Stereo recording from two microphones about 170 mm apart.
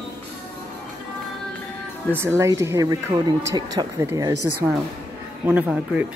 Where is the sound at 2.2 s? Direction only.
15° right (ahead or behind).